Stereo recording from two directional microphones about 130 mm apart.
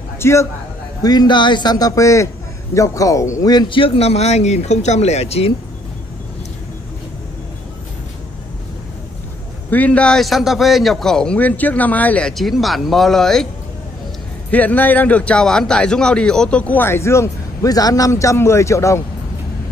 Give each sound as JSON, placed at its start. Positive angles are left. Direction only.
{"t": 0.2, "sound": "a man's voice", "side_deg": 20}
{"t": 1.0, "sound": "a man's voice", "side_deg": 35}
{"t": 9.7, "sound": "a man's voice", "side_deg": 10}
{"t": 14.5, "sound": "a man's voice", "side_deg": 10}